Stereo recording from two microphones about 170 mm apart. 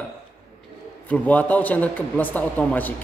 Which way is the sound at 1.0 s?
10° left (ahead or behind).